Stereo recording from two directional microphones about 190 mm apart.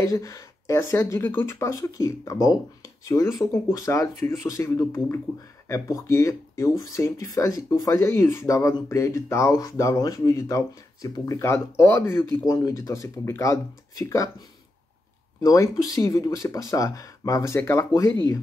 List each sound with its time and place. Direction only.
0.0 s speech: 15° left (ahead or behind)
3.6 s speech: 15° left (ahead or behind)
15.4 s speech: 15° left (ahead or behind)